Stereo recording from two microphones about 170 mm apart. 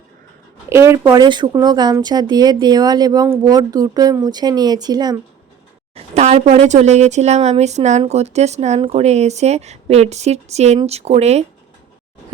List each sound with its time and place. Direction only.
0.7 s speech: 15° right (ahead or behind)
1.2 s speech: 25° right (ahead or behind)
5.9 s speech: 40° right (ahead or behind)